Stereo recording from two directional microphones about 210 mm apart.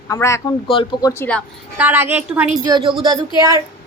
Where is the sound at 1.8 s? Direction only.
10° right (ahead or behind).